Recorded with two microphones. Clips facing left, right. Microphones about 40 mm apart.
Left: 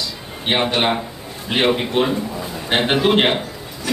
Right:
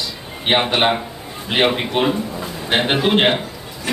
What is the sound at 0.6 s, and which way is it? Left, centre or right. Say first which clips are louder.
A man's voice: right 1 dB; centre.